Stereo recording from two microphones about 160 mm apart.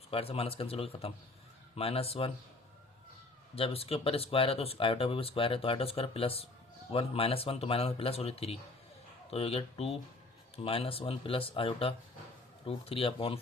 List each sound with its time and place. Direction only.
0.1 s speech: 35° left (ahead or behind)
3.5 s speech: 35° left (ahead or behind)